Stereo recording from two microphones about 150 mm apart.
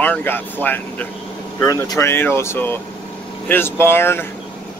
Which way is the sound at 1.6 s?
25° left (ahead or behind).